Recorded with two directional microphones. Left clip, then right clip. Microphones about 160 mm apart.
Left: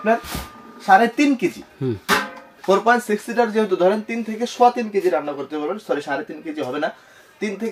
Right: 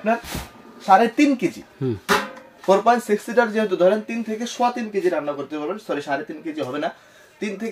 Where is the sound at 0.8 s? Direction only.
20° right (ahead or behind).